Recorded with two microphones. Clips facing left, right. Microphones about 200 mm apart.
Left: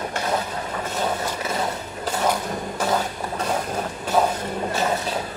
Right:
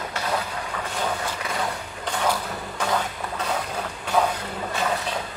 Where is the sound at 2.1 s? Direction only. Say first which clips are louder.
Left 2 dB; 25° left (ahead or behind).